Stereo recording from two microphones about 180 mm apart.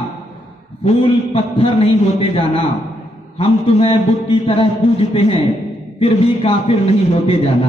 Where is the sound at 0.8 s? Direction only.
35° left (ahead or behind).